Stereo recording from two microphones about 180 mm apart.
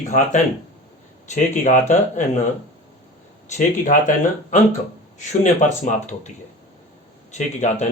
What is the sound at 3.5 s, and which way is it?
Speech, 45° left (ahead or behind).